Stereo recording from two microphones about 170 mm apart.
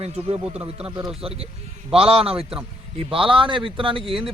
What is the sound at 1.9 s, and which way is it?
Speech, 35° right (ahead or behind).